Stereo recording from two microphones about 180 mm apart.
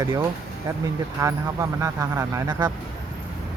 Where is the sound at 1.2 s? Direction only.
20° right (ahead or behind).